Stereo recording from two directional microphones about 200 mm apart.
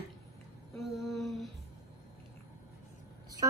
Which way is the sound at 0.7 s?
Centre (ahead or behind).